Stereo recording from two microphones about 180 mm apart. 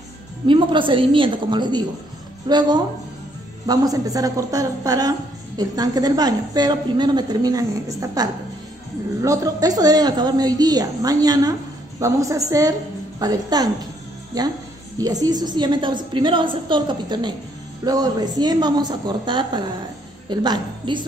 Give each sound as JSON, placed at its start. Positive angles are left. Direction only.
{"t": 0.5, "sound": "a woman's voice", "side_deg": -25}